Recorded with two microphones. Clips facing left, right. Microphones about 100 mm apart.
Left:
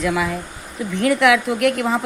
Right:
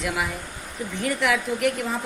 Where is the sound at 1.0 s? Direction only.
90° left.